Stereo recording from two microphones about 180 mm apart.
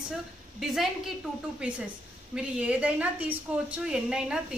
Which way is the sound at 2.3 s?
5° right (ahead or behind).